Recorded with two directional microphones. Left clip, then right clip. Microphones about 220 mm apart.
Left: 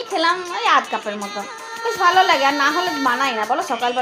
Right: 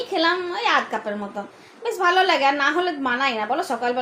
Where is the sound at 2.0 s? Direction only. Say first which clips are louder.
Left 3 dB; 25° left (ahead or behind).